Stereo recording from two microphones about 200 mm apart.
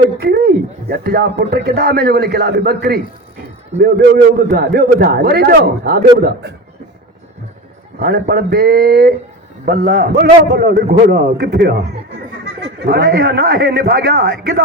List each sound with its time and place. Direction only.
0.2 s a man's voice: 50° right (ahead or behind)
7.9 s a man's voice: 50° right (ahead or behind)
12.8 s a man's voice: 50° right (ahead or behind)